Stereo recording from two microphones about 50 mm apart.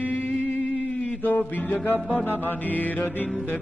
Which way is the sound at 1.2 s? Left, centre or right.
Left.